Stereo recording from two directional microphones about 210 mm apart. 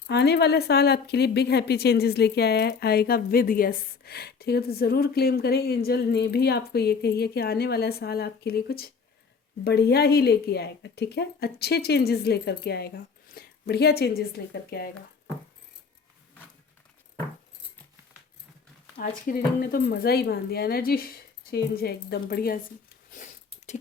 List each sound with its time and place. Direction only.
0.1 s a woman's voice: 50° left (ahead or behind)
18.9 s a woman's voice: 45° left (ahead or behind)
23.1 s a sound: 35° left (ahead or behind)